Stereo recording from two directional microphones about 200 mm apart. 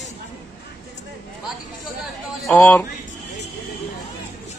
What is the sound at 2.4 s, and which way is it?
Speech, 5° left (ahead or behind).